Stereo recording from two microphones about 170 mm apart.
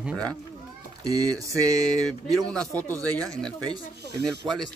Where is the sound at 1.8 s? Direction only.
5° left (ahead or behind).